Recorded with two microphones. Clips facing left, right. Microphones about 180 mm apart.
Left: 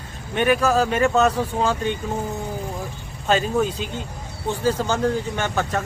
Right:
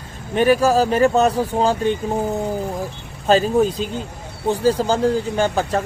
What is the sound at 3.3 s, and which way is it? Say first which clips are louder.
Speech: right 5 dB; 35° right (ahead or behind).